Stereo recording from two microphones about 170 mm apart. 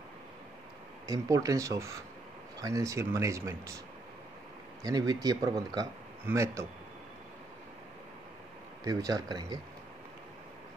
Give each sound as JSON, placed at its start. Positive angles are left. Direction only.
{"t": 1.0, "sound": "speech", "side_deg": -20}
{"t": 4.8, "sound": "speech", "side_deg": -20}
{"t": 8.8, "sound": "speech", "side_deg": -20}